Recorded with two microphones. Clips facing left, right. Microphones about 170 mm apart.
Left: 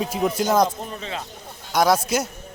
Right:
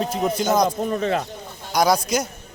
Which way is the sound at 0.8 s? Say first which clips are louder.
Right 10 dB; 50° right (ahead or behind).